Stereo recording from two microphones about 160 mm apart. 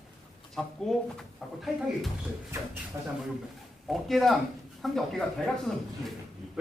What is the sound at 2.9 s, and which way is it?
Speech, 20° right (ahead or behind).